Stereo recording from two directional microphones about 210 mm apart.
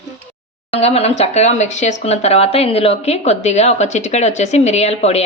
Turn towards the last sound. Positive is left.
turn(degrees=30)  # may be behind; listen again after turning